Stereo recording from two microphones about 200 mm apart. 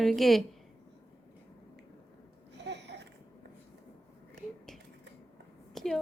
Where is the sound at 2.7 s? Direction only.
60° right (ahead or behind).